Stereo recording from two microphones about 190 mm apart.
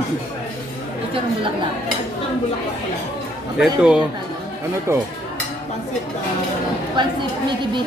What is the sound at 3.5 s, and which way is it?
Speech, 5° right (ahead or behind).